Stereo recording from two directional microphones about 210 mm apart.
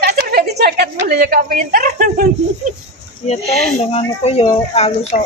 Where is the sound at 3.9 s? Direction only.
30° left (ahead or behind).